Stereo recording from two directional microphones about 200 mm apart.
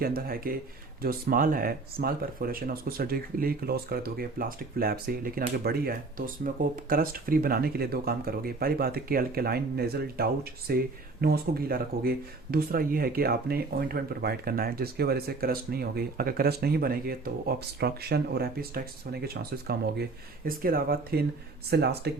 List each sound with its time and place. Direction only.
0.0 s speech: 45° right (ahead or behind)